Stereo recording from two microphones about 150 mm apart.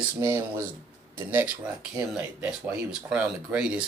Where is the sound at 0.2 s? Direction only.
15° right (ahead or behind).